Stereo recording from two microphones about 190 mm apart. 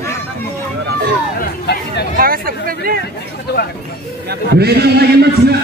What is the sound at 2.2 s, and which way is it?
Speech, 50° right (ahead or behind).